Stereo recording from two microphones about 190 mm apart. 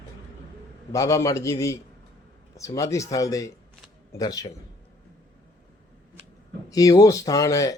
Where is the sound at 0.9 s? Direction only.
15° left (ahead or behind).